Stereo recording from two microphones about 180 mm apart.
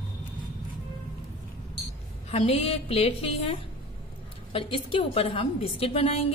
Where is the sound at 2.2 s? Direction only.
35° left (ahead or behind).